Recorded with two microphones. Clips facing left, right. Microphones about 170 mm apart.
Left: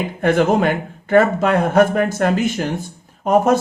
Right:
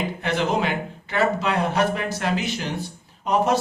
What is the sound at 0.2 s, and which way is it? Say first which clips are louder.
Speech: left 10 dB; 50° left (ahead or behind).